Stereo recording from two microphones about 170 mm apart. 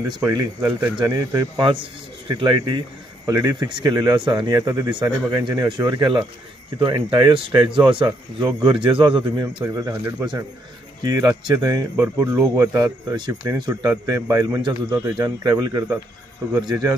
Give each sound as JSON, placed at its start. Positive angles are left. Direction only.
{"t": 0.1, "sound": "speech", "side_deg": -20}
{"t": 0.9, "sound": "speech", "side_deg": -20}
{"t": 11.1, "sound": "speech", "side_deg": -20}